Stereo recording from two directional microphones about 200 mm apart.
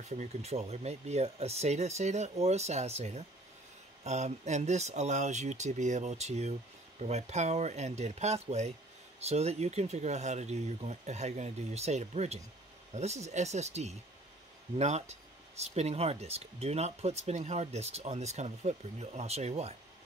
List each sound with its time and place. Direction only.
0.1 s speech: 35° right (ahead or behind)